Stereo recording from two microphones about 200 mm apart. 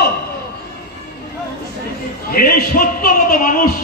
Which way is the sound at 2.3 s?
45° left (ahead or behind).